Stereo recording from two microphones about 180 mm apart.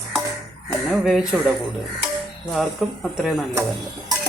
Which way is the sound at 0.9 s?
Centre (ahead or behind).